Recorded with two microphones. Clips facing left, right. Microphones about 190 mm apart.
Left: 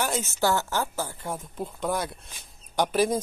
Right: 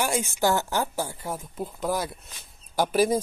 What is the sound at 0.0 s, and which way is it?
Speech, 10° right (ahead or behind).